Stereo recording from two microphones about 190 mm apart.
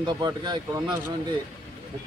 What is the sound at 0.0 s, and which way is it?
Speech, 20° right (ahead or behind).